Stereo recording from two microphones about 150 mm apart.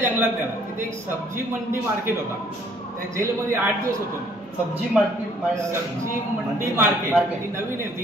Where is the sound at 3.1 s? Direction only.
15° right (ahead or behind).